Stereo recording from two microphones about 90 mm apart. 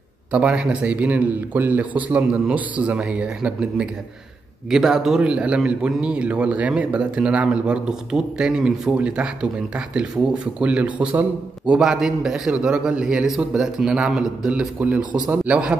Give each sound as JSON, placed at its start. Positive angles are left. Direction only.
{"t": 0.3, "sound": "a man's voice", "side_deg": -10}